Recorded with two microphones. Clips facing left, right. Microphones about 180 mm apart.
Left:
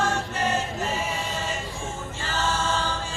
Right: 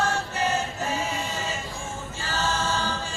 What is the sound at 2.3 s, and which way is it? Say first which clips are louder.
Choir: left 1 dB; 10° right (ahead or behind).